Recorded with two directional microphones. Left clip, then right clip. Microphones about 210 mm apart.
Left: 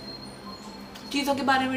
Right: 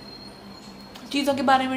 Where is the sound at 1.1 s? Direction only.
30° right (ahead or behind).